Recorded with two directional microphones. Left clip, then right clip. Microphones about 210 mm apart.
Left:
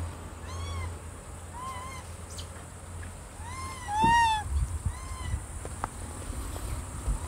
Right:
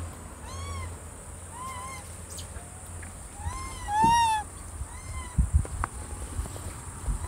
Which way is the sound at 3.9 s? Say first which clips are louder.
Right 1 dB; 35° right (ahead or behind).